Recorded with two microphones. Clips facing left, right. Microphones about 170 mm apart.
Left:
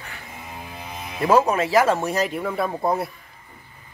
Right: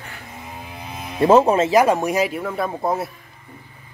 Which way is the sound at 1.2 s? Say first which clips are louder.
Right 4 dB; 25° right (ahead or behind).